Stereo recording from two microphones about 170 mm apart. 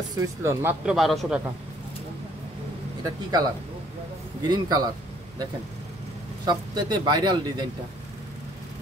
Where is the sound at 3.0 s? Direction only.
20° right (ahead or behind).